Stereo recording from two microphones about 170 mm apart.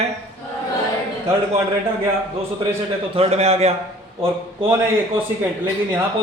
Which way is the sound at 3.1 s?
35° right (ahead or behind).